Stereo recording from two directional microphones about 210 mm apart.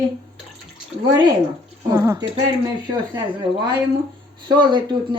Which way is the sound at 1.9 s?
15° right (ahead or behind).